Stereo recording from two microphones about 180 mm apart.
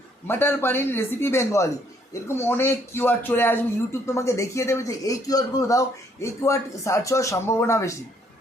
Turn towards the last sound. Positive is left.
turn(degrees=15)  # may be behind; listen again after turning